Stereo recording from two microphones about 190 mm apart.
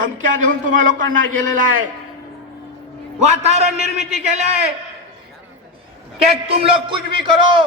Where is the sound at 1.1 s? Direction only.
45° right (ahead or behind).